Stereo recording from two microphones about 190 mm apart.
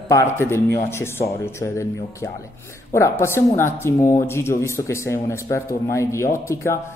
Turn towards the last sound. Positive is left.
turn(degrees=15)  # may be behind; listen again after turning